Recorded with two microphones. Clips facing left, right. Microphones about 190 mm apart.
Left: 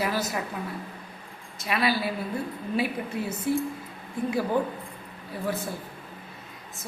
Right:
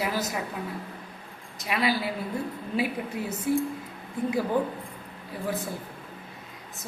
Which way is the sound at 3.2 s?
15° right (ahead or behind).